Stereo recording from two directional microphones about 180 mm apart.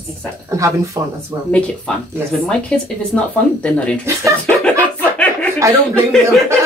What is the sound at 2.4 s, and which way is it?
Speech, 5° left (ahead or behind).